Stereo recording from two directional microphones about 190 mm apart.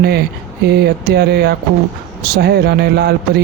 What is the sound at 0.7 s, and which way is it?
Speech, 60° right (ahead or behind).